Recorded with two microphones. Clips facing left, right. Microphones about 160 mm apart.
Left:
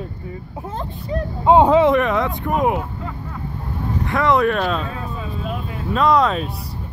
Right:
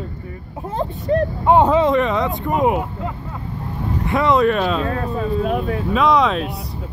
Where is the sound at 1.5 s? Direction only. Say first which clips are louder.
Left 2 dB; 15° left (ahead or behind).